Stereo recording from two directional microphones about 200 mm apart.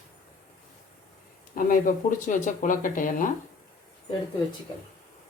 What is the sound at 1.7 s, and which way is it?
Speech, 40° left (ahead or behind).